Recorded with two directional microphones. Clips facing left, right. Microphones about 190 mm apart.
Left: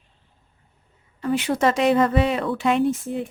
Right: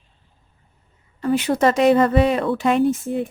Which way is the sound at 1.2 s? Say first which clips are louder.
Right 3 dB; 40° right (ahead or behind).